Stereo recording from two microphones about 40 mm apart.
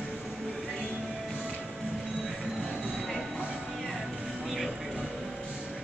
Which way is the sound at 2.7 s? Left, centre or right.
Centre.